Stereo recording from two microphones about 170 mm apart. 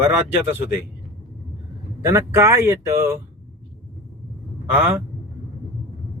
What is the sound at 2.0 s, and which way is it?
Speech, 15° right (ahead or behind).